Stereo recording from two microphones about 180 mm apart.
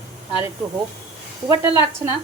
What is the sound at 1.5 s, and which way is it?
Speech, 15° right (ahead or behind).